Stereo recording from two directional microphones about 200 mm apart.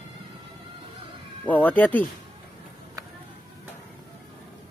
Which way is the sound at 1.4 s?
10° left (ahead or behind).